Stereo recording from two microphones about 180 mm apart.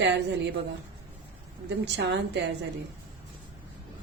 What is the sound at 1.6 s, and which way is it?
Speech, 75° right (ahead or behind).